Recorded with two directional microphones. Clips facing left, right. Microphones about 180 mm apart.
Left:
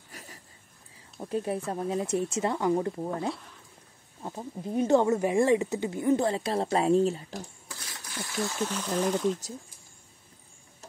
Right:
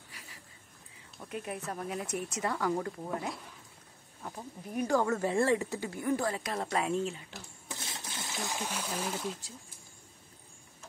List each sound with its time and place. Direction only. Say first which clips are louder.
0.1 s a sound: left 8 dB; 45° left (ahead or behind)
1.1 s speech: left 9 dB; 30° left (ahead or behind)
7.6 s speech: right 2 dB; 25° right (ahead or behind)